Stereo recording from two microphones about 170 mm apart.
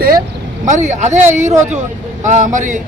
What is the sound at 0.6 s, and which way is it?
A man's voice, 45° right (ahead or behind).